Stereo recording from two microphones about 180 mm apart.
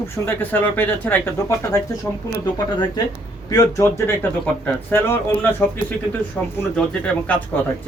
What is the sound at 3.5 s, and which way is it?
Speech, 15° left (ahead or behind).